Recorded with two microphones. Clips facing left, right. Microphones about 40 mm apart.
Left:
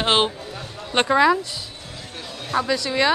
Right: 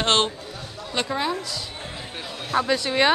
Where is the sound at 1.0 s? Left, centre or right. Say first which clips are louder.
Left 6 dB; left.